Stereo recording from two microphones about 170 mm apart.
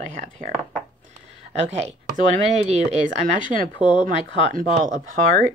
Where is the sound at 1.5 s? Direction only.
40° right (ahead or behind).